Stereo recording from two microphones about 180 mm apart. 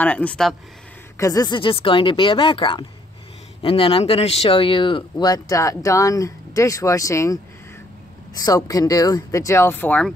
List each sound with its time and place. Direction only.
0.0 s speech: 10° left (ahead or behind)
1.1 s speech: 20° left (ahead or behind)
8.4 s speech: 20° left (ahead or behind)